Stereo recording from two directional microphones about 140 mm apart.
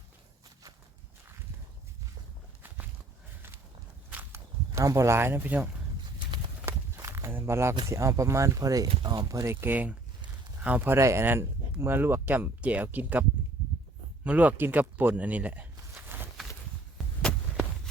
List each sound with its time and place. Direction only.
4.1 s walk: 15° right (ahead or behind)
6.7 s walk: 20° right (ahead or behind)
7.9 s speech: 20° right (ahead or behind)
14.3 s speech: 10° right (ahead or behind)